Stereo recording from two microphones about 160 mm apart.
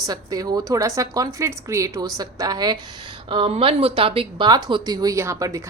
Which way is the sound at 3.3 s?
35° right (ahead or behind).